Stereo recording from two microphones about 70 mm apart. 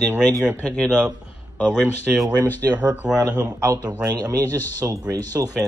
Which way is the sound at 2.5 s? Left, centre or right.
Left.